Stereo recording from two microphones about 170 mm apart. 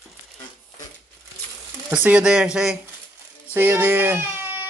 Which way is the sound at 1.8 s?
10° right (ahead or behind).